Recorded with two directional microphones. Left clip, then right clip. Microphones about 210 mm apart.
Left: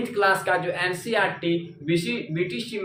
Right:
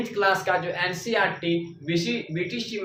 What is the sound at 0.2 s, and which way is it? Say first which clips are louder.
Speech: left 1 dB; 10° left (ahead or behind).